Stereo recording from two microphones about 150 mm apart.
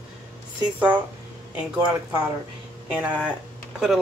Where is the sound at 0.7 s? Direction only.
10° right (ahead or behind).